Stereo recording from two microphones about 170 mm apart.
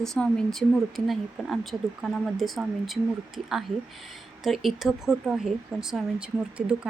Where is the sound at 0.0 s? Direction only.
5° left (ahead or behind).